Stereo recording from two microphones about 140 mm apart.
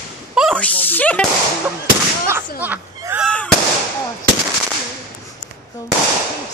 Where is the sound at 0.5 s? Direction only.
10° left (ahead or behind).